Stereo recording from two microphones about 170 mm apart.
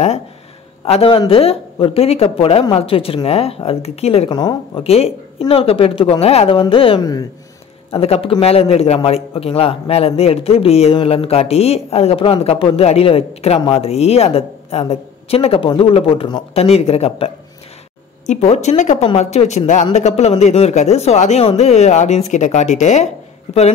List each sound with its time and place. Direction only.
0.8 s a man's voice: 35° left (ahead or behind)
4.3 s a man's voice: 25° left (ahead or behind)
7.9 s a man's voice: 35° left (ahead or behind)